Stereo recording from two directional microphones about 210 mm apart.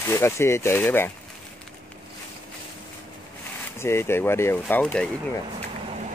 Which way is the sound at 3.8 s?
10° left (ahead or behind).